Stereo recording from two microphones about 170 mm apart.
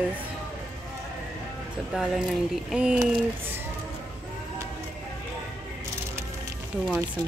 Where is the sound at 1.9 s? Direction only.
5° right (ahead or behind).